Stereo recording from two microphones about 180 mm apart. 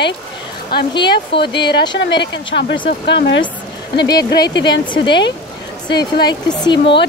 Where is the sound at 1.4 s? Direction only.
70° left (ahead or behind).